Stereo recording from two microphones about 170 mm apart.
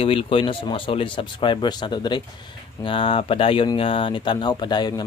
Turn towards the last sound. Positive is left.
turn(degrees=25)  # may be behind; listen again after turning